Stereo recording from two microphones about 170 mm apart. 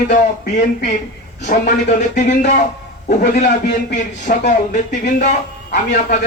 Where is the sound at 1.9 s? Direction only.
45° left (ahead or behind).